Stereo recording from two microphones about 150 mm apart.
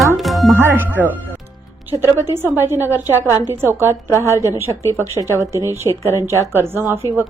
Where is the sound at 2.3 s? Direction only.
15° right (ahead or behind).